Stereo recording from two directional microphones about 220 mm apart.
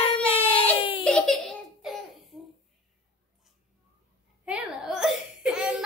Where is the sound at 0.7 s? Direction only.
25° left (ahead or behind).